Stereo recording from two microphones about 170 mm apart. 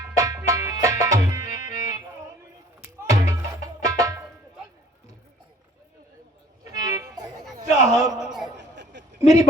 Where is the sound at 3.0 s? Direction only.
20° right (ahead or behind).